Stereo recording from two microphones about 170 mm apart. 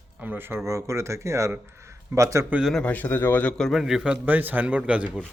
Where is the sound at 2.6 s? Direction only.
Centre (ahead or behind).